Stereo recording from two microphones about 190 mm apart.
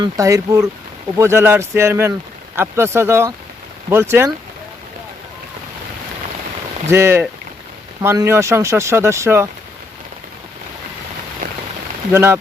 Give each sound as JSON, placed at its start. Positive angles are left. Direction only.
{"t": 0.0, "sound": "speech", "side_deg": -20}
{"t": 6.8, "sound": "speech", "side_deg": -15}
{"t": 12.1, "sound": "speech", "side_deg": -15}